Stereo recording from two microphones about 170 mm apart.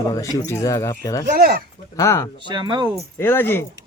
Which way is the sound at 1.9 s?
15° left (ahead or behind).